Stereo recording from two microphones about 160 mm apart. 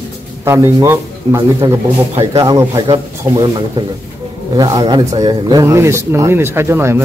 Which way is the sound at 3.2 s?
25° right (ahead or behind).